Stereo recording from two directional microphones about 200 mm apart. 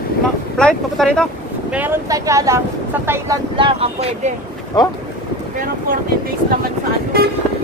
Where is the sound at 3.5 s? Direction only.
25° right (ahead or behind).